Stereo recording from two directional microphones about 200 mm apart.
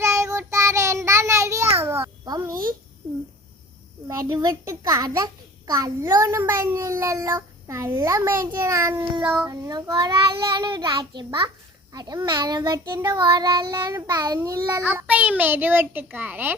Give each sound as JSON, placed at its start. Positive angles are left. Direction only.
{"t": 0.0, "sound": "child singing", "side_deg": -15}
{"t": 1.8, "sound": "babbling", "side_deg": -15}
{"t": 4.1, "sound": "a child's voice", "side_deg": -20}
{"t": 9.5, "sound": "child singing", "side_deg": -20}